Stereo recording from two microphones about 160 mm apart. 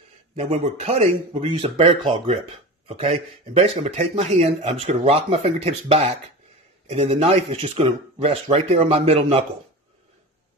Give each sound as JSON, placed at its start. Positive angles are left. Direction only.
{"t": 0.4, "sound": "speech", "side_deg": -40}